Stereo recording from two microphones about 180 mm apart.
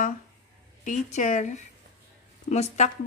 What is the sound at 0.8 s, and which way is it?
Speech, 40° left (ahead or behind).